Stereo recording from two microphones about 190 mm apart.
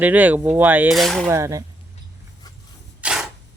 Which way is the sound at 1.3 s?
15° right (ahead or behind).